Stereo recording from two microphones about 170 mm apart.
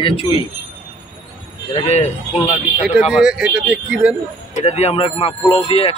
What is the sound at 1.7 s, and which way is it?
Speech, 40° left (ahead or behind).